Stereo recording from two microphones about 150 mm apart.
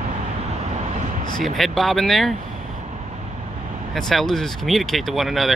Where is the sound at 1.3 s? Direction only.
Centre (ahead or behind).